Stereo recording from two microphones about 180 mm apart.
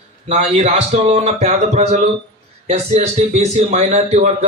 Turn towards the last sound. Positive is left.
turn(degrees=-35)  # may be behind; listen again after turning